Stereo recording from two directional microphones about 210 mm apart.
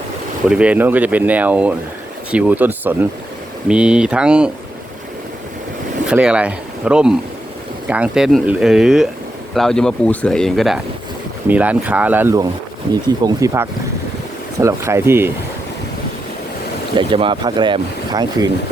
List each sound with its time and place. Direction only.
0.4 s speech: 5° right (ahead or behind)
6.1 s speech: 5° right (ahead or behind)
17.0 s speech: 25° right (ahead or behind)